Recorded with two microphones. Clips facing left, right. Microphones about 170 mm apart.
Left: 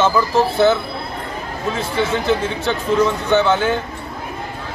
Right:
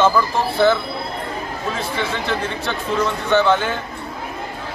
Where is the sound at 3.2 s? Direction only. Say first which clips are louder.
Left 1 dB; centre (ahead or behind).